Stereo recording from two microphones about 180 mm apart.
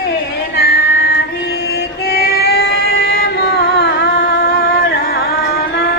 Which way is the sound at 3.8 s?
70° left (ahead or behind).